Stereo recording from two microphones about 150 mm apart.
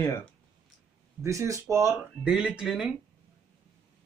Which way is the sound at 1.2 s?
20° right (ahead or behind).